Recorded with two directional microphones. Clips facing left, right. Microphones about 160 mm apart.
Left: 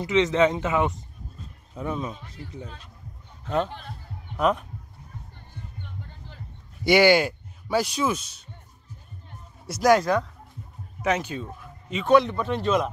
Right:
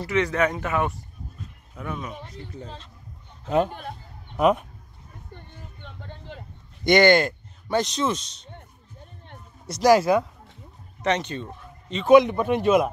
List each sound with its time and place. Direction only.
0.0 s speech: 20° left (ahead or behind)
2.2 s speech: 25° right (ahead or behind)
3.4 s speech: 10° right (ahead or behind)
5.3 s music: 75° right (ahead or behind)
6.8 s speech: 5° left (ahead or behind)
9.7 s speech: centre (ahead or behind)
11.0 s speech: 5° left (ahead or behind)
12.1 s speech: 15° right (ahead or behind)